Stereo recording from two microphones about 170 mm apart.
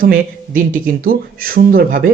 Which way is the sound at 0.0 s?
55° right (ahead or behind).